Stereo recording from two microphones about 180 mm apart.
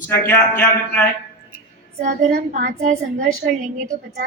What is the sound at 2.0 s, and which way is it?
A woman's voice, 50° right (ahead or behind).